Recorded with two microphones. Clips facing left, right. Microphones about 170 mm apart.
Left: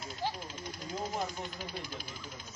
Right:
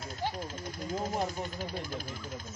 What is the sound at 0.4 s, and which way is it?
Speech, 45° right (ahead or behind).